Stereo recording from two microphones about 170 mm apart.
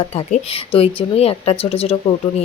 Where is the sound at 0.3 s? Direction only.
35° left (ahead or behind).